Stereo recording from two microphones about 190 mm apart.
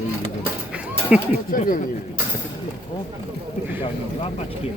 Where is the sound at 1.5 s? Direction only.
45° left (ahead or behind).